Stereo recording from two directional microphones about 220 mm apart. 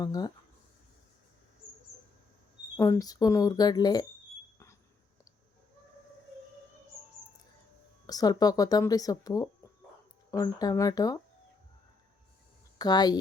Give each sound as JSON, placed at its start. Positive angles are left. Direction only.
{"t": 0.0, "sound": "speech", "side_deg": 15}
{"t": 2.7, "sound": "speech", "side_deg": 15}
{"t": 8.0, "sound": "speech", "side_deg": 15}
{"t": 12.8, "sound": "speech", "side_deg": 20}